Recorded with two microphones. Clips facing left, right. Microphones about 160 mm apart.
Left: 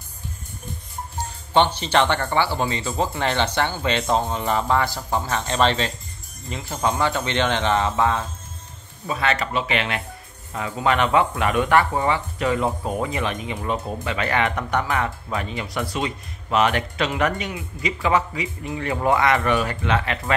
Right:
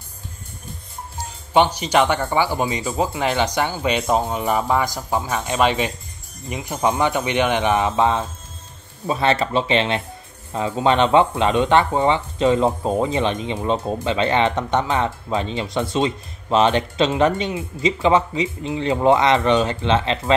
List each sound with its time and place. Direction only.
1.5 s speech: 10° right (ahead or behind)